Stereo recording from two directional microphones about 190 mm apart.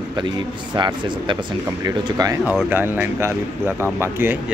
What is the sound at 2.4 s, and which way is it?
Speech, 10° right (ahead or behind).